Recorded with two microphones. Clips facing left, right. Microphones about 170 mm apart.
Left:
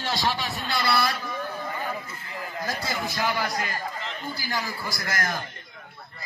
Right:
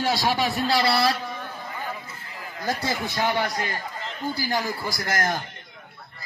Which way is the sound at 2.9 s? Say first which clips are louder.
Right 2 dB; 25° right (ahead or behind).